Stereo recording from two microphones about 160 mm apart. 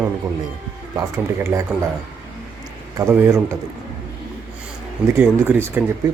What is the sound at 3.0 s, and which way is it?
Speech, 15° right (ahead or behind).